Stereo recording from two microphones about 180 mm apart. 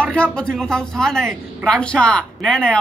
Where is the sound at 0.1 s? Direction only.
5° left (ahead or behind).